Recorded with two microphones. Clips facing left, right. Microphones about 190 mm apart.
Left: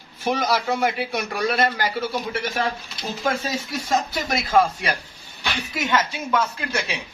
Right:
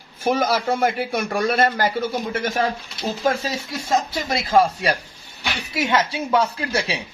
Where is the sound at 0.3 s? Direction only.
45° right (ahead or behind).